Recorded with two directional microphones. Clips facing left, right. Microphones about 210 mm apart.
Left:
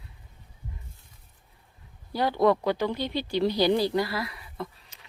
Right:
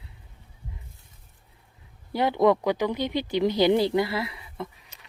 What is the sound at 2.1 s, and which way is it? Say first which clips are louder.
Speech: right 2 dB; 20° right (ahead or behind).